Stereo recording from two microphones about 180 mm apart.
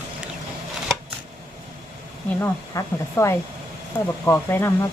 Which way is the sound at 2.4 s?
15° left (ahead or behind).